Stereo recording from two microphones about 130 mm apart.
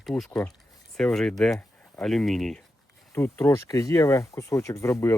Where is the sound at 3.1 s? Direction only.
20° left (ahead or behind).